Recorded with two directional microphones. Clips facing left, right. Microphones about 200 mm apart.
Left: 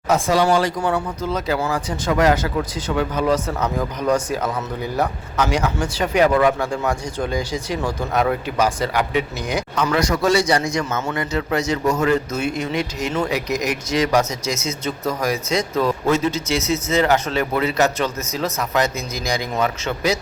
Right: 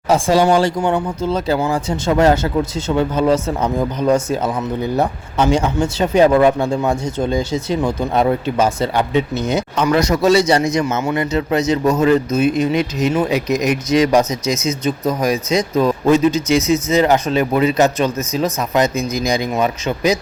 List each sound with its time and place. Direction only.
0.1 s speech: 30° right (ahead or behind)